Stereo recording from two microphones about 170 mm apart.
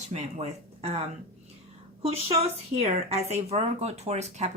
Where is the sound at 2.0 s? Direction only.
35° right (ahead or behind).